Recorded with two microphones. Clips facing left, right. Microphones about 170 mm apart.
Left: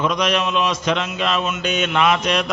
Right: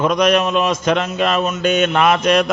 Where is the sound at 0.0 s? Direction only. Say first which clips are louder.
Right 5 dB; 50° right (ahead or behind).